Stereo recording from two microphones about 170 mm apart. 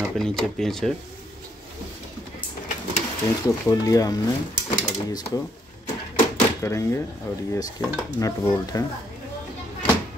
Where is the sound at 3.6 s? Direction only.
20° left (ahead or behind).